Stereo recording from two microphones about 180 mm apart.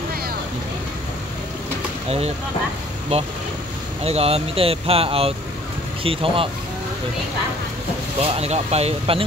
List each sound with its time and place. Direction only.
2.0 s speech: 35° right (ahead or behind)
4.0 s speech: 35° right (ahead or behind)
8.2 s speech: 35° right (ahead or behind)